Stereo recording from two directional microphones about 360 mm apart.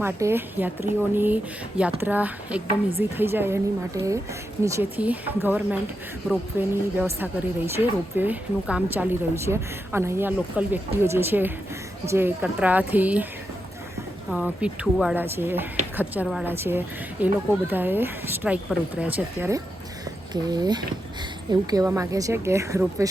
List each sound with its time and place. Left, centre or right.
0.0 s a woman's voice: centre
14.3 s a woman's voice: centre